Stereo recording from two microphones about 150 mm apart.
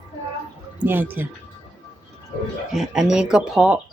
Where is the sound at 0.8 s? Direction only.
10° right (ahead or behind).